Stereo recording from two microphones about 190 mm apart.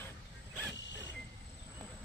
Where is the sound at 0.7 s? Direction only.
70° left (ahead or behind).